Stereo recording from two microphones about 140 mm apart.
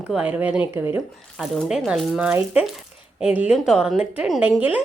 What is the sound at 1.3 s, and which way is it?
Speech, centre (ahead or behind).